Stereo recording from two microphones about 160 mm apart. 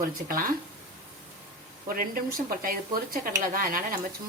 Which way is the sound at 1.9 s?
60° right (ahead or behind).